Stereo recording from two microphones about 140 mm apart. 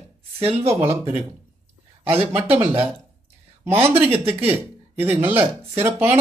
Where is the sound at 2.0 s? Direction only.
45° right (ahead or behind).